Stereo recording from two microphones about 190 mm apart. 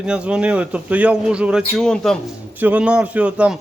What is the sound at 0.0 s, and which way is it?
A man's voice, 5° right (ahead or behind).